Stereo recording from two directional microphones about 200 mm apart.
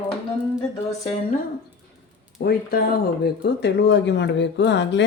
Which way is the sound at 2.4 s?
50° left (ahead or behind).